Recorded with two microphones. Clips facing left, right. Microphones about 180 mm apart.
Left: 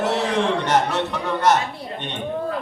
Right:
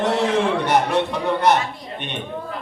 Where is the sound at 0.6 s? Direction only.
10° right (ahead or behind).